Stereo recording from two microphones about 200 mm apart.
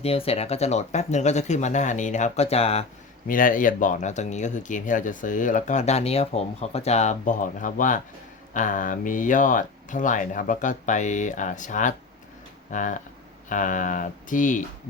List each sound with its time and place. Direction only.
0.0 s speech: 30° left (ahead or behind)
3.2 s speech: 45° left (ahead or behind)